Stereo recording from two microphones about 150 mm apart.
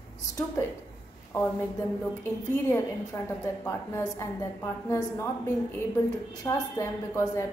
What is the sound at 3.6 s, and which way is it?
A woman's voice, 15° left (ahead or behind).